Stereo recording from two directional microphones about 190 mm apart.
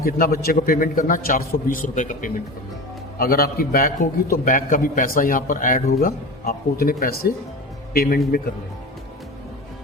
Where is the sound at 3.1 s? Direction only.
55° left (ahead or behind).